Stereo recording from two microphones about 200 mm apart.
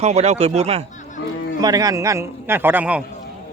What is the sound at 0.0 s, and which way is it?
Speech, 35° right (ahead or behind).